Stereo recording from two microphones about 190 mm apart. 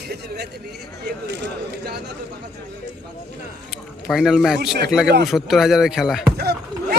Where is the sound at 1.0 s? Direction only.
65° right (ahead or behind).